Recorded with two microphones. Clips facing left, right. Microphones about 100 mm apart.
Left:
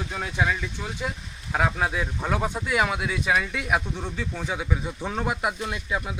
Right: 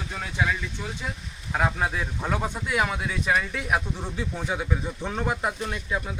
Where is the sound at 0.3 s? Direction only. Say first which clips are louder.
Left 1 dB; 15° left (ahead or behind).